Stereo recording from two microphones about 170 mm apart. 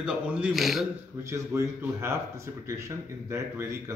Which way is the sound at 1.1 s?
15° right (ahead or behind).